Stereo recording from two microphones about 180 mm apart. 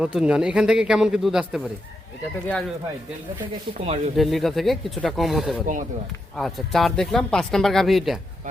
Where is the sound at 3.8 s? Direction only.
35° right (ahead or behind).